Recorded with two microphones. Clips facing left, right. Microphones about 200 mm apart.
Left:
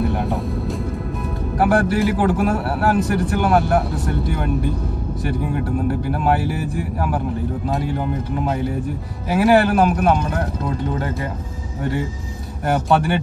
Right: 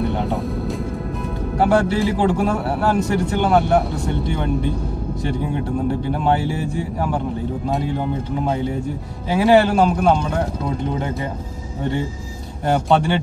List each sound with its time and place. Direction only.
1.6 s speech: 25° right (ahead or behind)
6.1 s speech: 25° right (ahead or behind)
9.4 s speech: 25° right (ahead or behind)
11.8 s speech: 25° right (ahead or behind)